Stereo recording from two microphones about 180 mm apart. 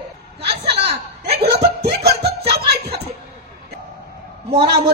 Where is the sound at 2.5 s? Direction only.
65° right (ahead or behind).